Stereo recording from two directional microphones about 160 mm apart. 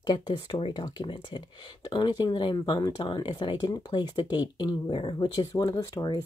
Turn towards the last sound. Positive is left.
turn(degrees=25)  # may be behind; listen again after turning